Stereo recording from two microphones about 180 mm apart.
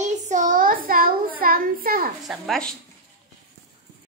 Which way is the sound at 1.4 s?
55° right (ahead or behind).